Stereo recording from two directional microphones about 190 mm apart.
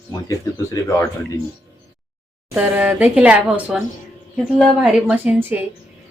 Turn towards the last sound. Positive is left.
turn(degrees=-10)  # may be behind; listen again after turning